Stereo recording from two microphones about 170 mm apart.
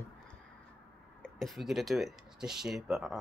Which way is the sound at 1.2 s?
Centre (ahead or behind).